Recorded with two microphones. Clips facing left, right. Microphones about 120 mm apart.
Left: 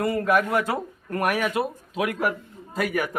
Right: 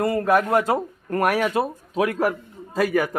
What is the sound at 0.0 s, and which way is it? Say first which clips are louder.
Speech: right 2 dB; 35° right (ahead or behind).